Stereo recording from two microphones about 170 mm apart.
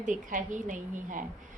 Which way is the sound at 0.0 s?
50° right (ahead or behind).